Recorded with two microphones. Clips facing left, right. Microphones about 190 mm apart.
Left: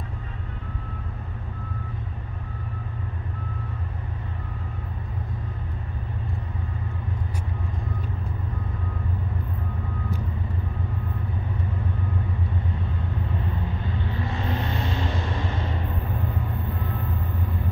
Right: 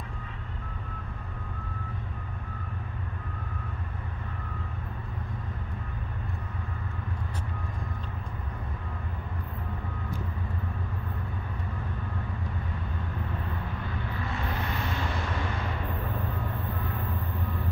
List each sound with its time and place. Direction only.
14.1 s vehicle: 25° left (ahead or behind)